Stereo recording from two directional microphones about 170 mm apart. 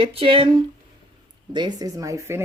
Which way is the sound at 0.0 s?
35° right (ahead or behind).